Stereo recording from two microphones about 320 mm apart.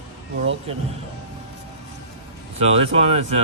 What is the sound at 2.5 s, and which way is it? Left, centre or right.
Speech, centre.